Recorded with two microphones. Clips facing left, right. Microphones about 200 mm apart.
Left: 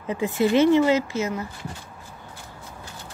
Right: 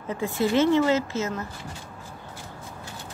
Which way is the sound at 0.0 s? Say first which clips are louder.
Left 3 dB; 20° left (ahead or behind).